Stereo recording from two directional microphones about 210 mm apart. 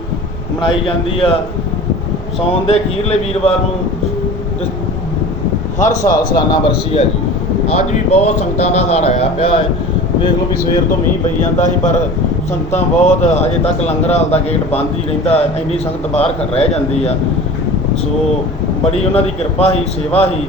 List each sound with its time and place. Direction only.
0.6 s a man's voice: 25° left (ahead or behind)
2.5 s a man's voice: 30° left (ahead or behind)
6.0 s a man's voice: 15° left (ahead or behind)
11.5 s a man's voice: 35° left (ahead or behind)
18.9 s a man's voice: 30° left (ahead or behind)